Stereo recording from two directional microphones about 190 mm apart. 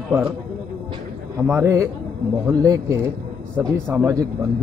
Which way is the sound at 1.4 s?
15° right (ahead or behind).